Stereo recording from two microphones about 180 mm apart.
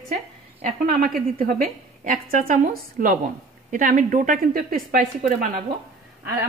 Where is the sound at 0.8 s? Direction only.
50° right (ahead or behind).